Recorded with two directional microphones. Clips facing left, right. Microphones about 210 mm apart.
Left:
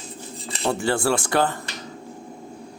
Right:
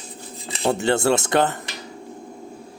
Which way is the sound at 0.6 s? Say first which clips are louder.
Right 3 dB; 20° right (ahead or behind).